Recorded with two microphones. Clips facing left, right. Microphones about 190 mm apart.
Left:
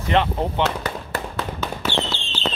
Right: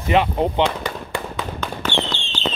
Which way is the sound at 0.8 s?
5° left (ahead or behind).